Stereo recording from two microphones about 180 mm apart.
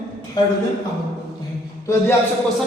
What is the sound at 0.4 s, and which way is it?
Speech, 25° left (ahead or behind).